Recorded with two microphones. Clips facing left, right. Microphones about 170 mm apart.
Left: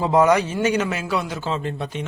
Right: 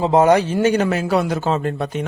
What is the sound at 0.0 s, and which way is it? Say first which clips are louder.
Speech: right 3 dB; 25° right (ahead or behind).